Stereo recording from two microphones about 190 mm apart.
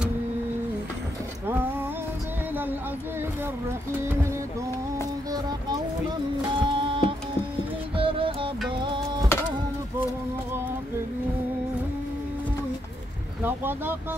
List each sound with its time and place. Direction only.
1.5 s a sound: 10° right (ahead or behind)
4.0 s speech: 15° right (ahead or behind)
6.5 s printer: 25° right (ahead or behind)
7.9 s music: 30° right (ahead or behind)
8.8 s a sound: 25° right (ahead or behind)
13.4 s speech: 10° right (ahead or behind)